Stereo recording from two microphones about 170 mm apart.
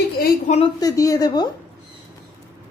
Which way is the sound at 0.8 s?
20° left (ahead or behind).